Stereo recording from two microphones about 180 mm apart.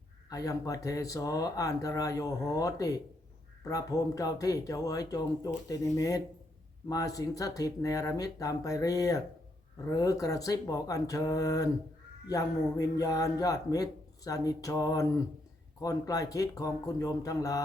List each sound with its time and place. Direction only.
0.3 s a man's voice: 20° left (ahead or behind)